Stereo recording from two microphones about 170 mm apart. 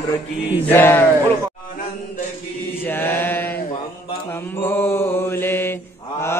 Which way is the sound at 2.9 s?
10° left (ahead or behind).